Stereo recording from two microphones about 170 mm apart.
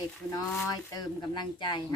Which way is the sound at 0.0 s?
20° left (ahead or behind).